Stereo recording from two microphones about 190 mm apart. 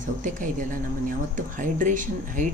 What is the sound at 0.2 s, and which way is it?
Speech, 45° right (ahead or behind).